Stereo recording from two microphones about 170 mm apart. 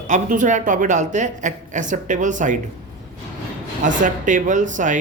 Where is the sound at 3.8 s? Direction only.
50° right (ahead or behind).